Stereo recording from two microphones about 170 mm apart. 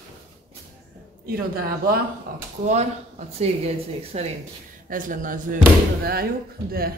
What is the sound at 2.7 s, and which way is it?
Speech, 40° right (ahead or behind).